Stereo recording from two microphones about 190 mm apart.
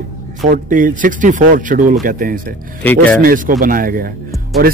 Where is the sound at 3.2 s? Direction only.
45° right (ahead or behind).